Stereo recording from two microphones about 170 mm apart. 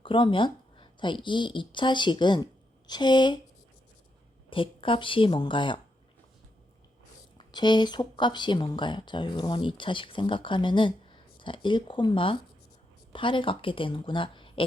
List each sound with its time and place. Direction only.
0.0 s speech: 30° left (ahead or behind)
4.4 s speech: 30° left (ahead or behind)
7.3 s speech: 25° left (ahead or behind)